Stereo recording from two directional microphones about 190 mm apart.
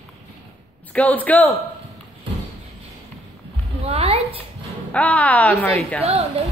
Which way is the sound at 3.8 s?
30° right (ahead or behind).